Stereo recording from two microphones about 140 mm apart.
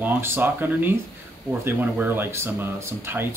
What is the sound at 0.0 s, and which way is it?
Speech, 15° right (ahead or behind).